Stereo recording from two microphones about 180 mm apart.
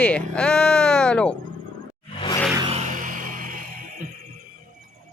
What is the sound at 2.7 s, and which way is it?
Music, 40° right (ahead or behind).